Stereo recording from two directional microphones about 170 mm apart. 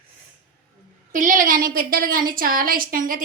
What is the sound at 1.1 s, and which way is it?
A woman's voice, 50° right (ahead or behind).